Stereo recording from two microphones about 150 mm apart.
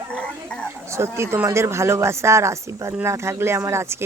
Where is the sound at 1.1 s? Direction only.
15° right (ahead or behind).